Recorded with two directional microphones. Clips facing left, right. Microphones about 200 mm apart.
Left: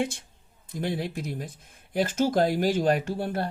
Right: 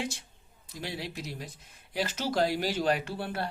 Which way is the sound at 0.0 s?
55° left (ahead or behind).